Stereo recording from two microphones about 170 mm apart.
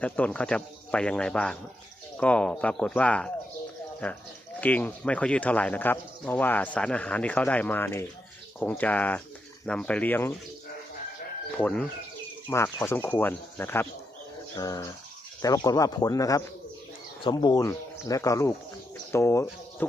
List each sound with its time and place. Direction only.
0.0 s speech: 10° left (ahead or behind)
4.6 s speech: 10° left (ahead or behind)
11.5 s speech: 5° left (ahead or behind)